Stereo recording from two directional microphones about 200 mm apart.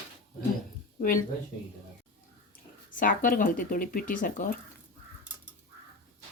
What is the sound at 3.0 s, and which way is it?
Speech, 45° left (ahead or behind).